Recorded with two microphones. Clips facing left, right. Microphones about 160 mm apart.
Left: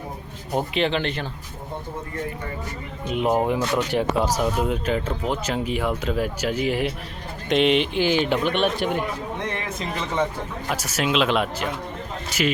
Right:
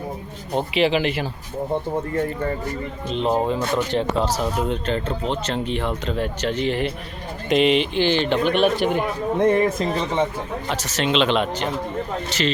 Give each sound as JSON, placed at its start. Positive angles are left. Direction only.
{"t": 0.7, "sound": "speech", "side_deg": -5}
{"t": 3.1, "sound": "speech", "side_deg": 10}
{"t": 9.4, "sound": "speech", "side_deg": -50}
{"t": 10.7, "sound": "speech", "side_deg": 10}